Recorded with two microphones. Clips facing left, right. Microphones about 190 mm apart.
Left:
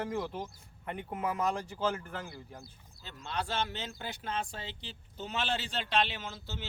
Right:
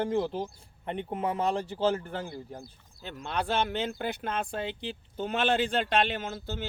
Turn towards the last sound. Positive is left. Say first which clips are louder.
# right 8 dB
turn(degrees=-50)  # may be behind; listen again after turning